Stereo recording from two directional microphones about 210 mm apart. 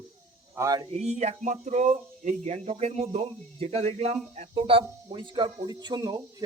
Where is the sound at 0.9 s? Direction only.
30° right (ahead or behind).